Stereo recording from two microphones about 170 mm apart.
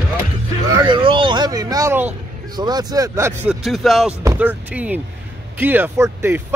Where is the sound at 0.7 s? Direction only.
25° right (ahead or behind).